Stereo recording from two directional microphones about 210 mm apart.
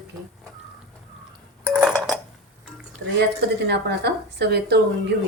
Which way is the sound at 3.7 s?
50° right (ahead or behind).